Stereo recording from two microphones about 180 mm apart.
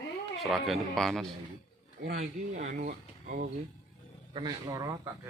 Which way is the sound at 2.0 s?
45° right (ahead or behind).